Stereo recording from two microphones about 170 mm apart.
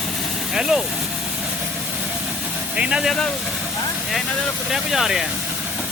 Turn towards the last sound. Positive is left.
turn(degrees=0)  # may be behind; listen again after turning